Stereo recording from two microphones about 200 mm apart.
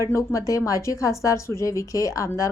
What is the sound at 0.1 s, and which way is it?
A woman's voice, 15° left (ahead or behind).